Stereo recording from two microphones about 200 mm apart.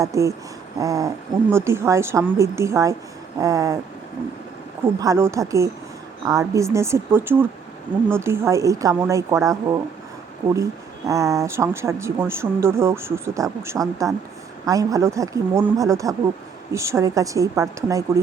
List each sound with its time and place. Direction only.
0.0 s speech: 15° right (ahead or behind)
4.9 s speech: 15° right (ahead or behind)